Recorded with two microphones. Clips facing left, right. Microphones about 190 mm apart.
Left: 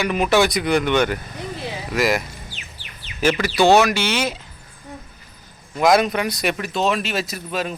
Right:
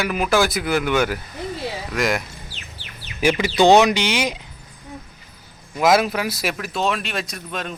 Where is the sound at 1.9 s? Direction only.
5° left (ahead or behind).